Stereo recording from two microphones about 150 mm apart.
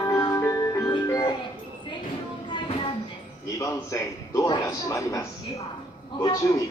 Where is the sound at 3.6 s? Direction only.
20° left (ahead or behind).